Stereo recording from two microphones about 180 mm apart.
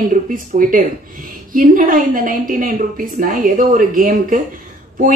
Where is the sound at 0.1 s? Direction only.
50° right (ahead or behind).